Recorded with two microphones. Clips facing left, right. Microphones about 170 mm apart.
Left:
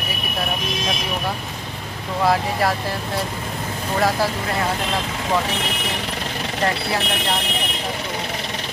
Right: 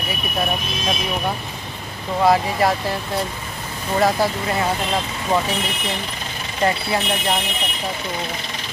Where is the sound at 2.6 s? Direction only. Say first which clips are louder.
Right 3 dB; centre (ahead or behind).